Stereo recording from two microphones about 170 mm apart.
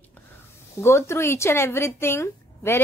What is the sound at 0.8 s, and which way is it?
Speech, 15° left (ahead or behind).